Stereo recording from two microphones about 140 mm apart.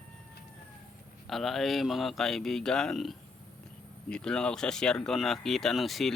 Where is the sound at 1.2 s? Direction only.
Centre (ahead or behind).